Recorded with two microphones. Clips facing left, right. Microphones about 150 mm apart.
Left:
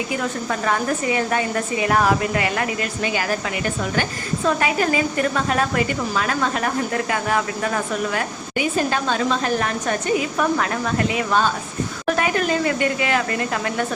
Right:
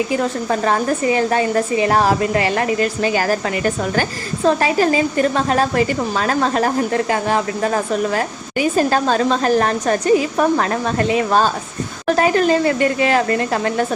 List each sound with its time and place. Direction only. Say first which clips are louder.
0.5 s a woman's voice: right 4 dB; 35° right (ahead or behind)